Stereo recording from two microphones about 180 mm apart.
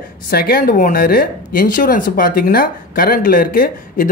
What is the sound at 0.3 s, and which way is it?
Speech, 55° left (ahead or behind).